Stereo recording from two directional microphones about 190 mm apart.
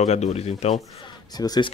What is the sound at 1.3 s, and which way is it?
Speech, 20° left (ahead or behind).